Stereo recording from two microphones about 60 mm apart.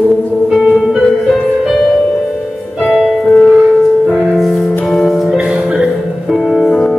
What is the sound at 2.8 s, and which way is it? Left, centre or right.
Music, centre.